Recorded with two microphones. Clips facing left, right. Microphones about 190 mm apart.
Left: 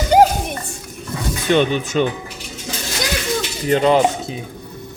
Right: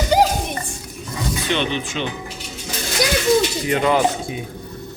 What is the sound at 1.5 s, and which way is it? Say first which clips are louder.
Speech: left 8 dB; 45° left (ahead or behind).